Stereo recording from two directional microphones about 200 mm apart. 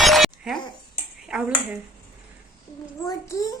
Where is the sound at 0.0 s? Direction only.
Centre (ahead or behind).